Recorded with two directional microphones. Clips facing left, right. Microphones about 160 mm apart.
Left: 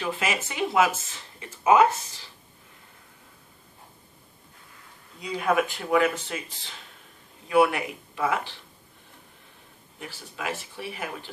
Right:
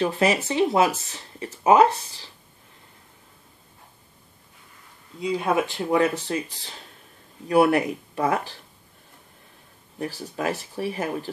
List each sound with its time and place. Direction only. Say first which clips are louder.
0.0 s speech: right 7 dB; 35° right (ahead or behind)
5.2 s speech: right 2 dB; 25° right (ahead or behind)
7.4 s speech: right 3 dB; 40° right (ahead or behind)
9.9 s speech: right 9 dB; 40° right (ahead or behind)